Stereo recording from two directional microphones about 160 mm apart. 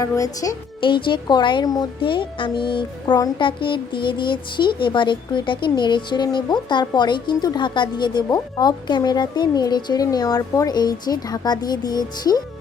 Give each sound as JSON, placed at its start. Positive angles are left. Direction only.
{"t": 0.0, "sound": "speech", "side_deg": 20}
{"t": 0.8, "sound": "speech", "side_deg": 30}